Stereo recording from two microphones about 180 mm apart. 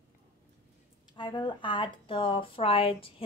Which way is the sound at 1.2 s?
25° left (ahead or behind).